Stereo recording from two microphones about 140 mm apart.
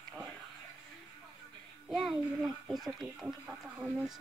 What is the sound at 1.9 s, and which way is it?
Speech, centre (ahead or behind).